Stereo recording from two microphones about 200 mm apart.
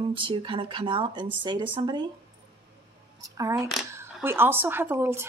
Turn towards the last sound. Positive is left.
turn(degrees=-10)  # may be behind; listen again after turning